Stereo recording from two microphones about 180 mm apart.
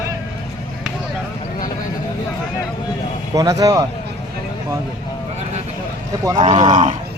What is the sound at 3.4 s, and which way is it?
Speech, 20° right (ahead or behind).